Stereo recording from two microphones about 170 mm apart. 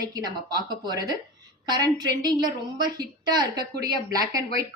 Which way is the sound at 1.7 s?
25° right (ahead or behind).